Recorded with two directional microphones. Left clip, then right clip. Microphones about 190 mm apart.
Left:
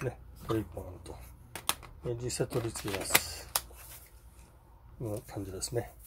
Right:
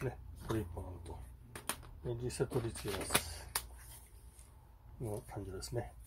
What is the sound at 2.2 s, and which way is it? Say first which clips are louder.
Speech: left 3 dB; 30° left (ahead or behind).